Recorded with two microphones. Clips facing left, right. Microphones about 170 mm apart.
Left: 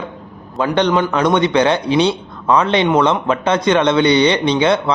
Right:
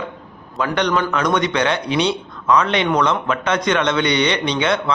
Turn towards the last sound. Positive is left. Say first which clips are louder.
# left 5 dB
turn(degrees=30)  # may be behind; listen again after turning